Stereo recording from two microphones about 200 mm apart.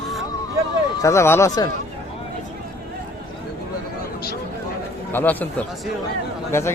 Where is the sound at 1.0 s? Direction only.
15° left (ahead or behind).